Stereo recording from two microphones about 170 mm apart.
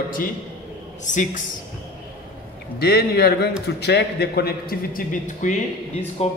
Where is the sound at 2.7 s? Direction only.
70° left (ahead or behind); by 5.5 s 50° left (ahead or behind).